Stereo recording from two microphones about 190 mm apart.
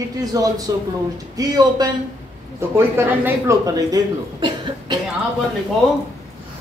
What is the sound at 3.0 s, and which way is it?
Speech, 15° right (ahead or behind).